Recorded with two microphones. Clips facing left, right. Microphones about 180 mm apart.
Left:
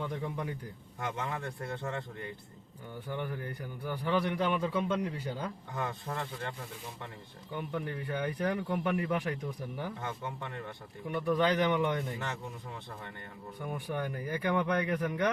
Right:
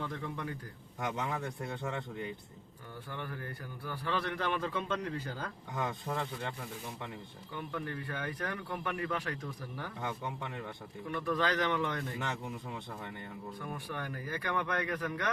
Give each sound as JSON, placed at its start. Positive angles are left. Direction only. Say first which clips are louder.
{"t": 0.0, "sound": "speech", "louder": "left 3 dB", "side_deg": 15}
{"t": 1.0, "sound": "speech", "louder": "right 1 dB", "side_deg": -20}
{"t": 3.1, "sound": "speech", "louder": "left 5 dB", "side_deg": 15}
{"t": 5.7, "sound": "speech", "louder": "right 3 dB", "side_deg": -15}
{"t": 7.5, "sound": "speech", "louder": "left 3 dB", "side_deg": 15}
{"t": 10.0, "sound": "speech", "louder": "even", "side_deg": -15}
{"t": 11.1, "sound": "speech", "louder": "left 4 dB", "side_deg": 20}
{"t": 13.6, "sound": "speech", "louder": "left 7 dB", "side_deg": 20}